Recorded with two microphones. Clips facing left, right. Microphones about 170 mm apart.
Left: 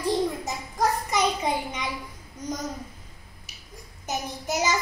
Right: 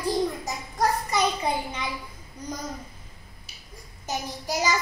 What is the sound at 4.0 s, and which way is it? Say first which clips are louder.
Child singing: left 1 dB; 20° left (ahead or behind).